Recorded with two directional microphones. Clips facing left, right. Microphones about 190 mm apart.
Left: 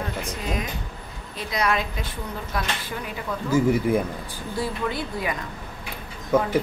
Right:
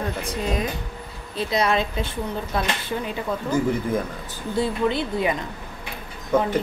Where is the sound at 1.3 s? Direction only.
25° right (ahead or behind).